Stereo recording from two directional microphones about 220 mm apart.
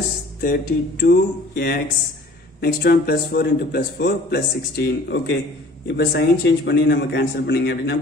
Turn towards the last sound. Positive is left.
turn(degrees=50)  # may be behind; listen again after turning